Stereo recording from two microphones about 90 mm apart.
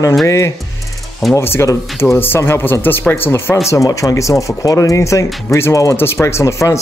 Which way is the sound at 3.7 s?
35° left (ahead or behind).